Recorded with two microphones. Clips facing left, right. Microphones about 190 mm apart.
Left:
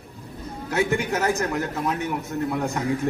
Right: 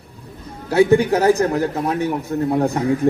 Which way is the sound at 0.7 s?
35° right (ahead or behind).